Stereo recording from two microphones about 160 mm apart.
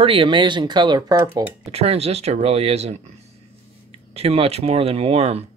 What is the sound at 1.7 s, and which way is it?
Speech, 40° right (ahead or behind).